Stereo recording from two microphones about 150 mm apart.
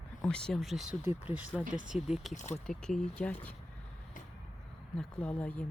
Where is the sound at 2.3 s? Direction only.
50° left (ahead or behind).